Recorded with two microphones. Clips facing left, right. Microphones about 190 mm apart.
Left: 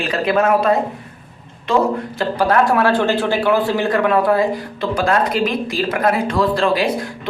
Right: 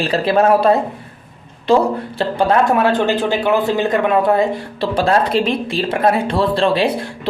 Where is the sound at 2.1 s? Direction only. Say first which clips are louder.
Right 2 dB; 25° right (ahead or behind).